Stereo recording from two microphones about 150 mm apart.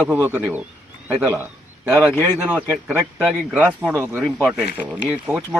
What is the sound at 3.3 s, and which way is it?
Speech, centre (ahead or behind).